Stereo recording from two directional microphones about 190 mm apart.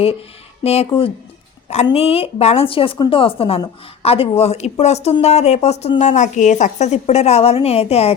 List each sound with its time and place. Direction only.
0.6 s a woman's voice: 35° left (ahead or behind)